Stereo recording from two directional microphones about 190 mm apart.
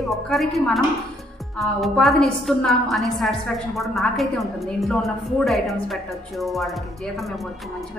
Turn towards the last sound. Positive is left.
turn(degrees=0)  # may be behind; listen again after turning